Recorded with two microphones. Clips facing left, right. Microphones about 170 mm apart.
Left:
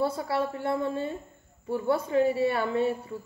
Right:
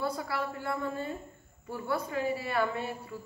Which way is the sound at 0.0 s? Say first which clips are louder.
Left 6 dB; 25° left (ahead or behind).